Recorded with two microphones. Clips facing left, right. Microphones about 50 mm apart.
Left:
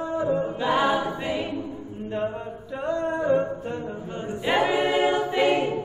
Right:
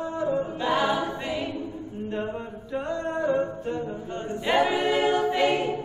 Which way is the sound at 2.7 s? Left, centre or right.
Centre.